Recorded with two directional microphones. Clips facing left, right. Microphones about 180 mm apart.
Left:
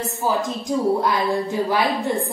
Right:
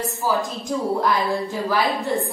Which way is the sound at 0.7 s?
20° left (ahead or behind).